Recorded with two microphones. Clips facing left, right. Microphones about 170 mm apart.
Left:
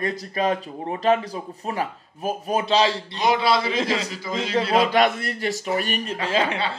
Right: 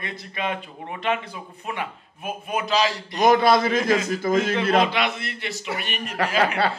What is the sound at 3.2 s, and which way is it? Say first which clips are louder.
A man's voice: right 4 dB; 50° right (ahead or behind).